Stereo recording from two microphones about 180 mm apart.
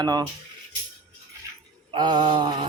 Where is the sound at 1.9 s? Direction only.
25° right (ahead or behind).